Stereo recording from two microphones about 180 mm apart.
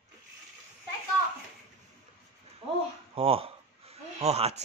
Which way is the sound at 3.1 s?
30° right (ahead or behind).